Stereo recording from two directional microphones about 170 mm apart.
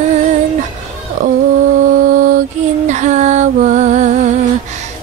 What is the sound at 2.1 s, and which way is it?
Mantra, 50° right (ahead or behind).